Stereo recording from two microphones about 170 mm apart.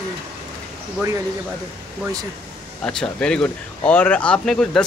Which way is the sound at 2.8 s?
5° left (ahead or behind).